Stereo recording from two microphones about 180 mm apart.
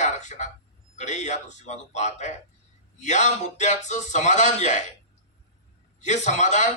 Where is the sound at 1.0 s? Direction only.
40° left (ahead or behind).